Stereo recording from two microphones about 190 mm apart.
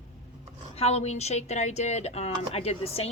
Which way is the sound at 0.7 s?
35° left (ahead or behind).